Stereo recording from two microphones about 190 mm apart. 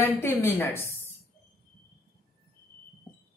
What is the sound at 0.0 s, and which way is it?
Speech, 10° left (ahead or behind).